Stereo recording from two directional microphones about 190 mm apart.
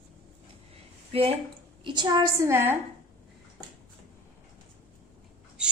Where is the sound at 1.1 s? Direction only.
30° right (ahead or behind); by 2.8 s 15° right (ahead or behind).